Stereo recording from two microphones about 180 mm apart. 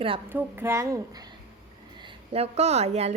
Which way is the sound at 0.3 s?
10° right (ahead or behind).